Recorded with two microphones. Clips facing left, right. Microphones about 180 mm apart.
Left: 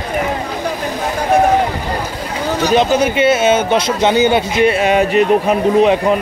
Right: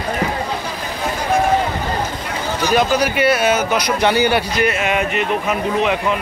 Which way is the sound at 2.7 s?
25° left (ahead or behind).